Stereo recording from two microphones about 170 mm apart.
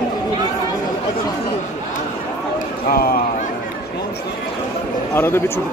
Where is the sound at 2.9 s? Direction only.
60° left (ahead or behind).